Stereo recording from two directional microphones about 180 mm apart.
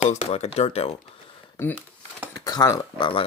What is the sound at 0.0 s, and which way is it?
Speech, 40° left (ahead or behind).